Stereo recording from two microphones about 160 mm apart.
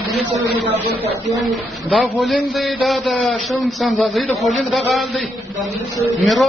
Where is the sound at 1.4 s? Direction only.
Centre (ahead or behind).